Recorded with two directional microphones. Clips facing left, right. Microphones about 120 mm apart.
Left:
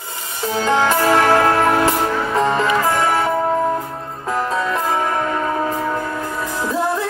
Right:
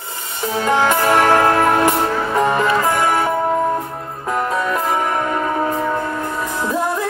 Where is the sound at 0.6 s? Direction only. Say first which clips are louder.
Even; 20° right (ahead or behind).